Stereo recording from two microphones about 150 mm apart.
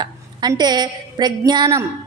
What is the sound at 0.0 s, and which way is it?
A woman's voice, 30° right (ahead or behind).